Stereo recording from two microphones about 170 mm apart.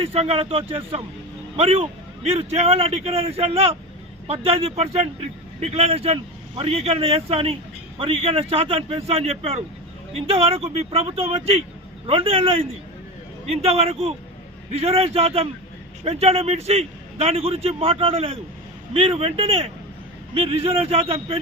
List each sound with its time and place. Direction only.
0.0 s a man's voice: 35° right (ahead or behind)